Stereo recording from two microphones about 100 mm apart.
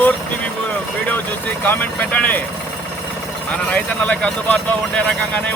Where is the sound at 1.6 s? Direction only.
20° left (ahead or behind).